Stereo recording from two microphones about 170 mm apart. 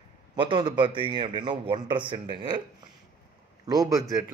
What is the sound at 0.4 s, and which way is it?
A man's voice, 30° right (ahead or behind).